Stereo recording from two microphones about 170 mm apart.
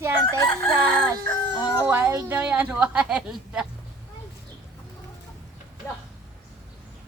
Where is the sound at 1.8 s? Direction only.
10° right (ahead or behind).